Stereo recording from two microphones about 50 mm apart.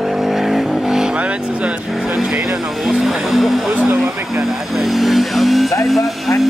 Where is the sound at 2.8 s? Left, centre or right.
Centre.